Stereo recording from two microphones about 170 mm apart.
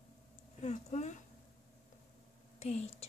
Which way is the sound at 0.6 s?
45° left (ahead or behind).